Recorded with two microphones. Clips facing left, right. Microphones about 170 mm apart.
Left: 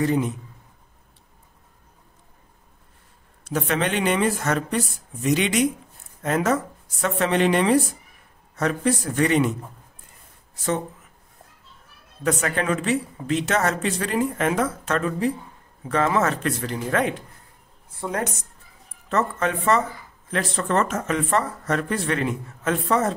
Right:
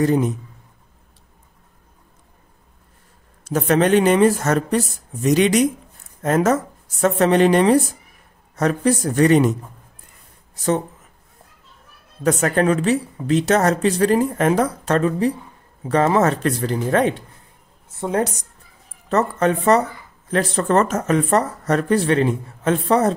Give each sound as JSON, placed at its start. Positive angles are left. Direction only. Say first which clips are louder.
{"t": 0.0, "sound": "speech", "louder": "right 4 dB", "side_deg": -40}
{"t": 3.4, "sound": "speech", "louder": "right 7 dB", "side_deg": -40}
{"t": 12.2, "sound": "speech", "louder": "right 6 dB", "side_deg": -40}
{"t": 19.0, "sound": "speech", "louder": "right 5 dB", "side_deg": -40}